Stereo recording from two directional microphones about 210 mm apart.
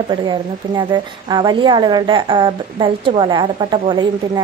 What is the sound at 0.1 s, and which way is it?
A woman's voice, 20° right (ahead or behind).